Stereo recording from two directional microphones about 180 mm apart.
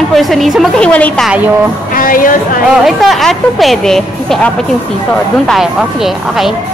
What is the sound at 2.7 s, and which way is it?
Speech, centre (ahead or behind).